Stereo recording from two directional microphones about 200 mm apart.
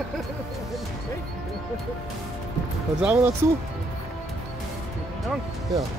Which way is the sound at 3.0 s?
10° right (ahead or behind).